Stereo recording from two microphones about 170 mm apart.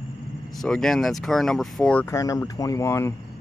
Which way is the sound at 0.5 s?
5° left (ahead or behind).